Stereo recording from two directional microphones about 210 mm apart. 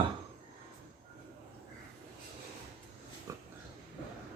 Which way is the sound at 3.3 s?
15° right (ahead or behind).